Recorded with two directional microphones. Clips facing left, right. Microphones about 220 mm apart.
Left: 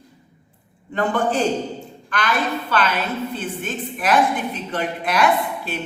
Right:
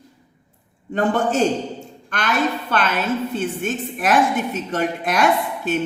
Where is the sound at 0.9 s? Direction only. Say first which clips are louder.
Right 2 dB; 45° right (ahead or behind).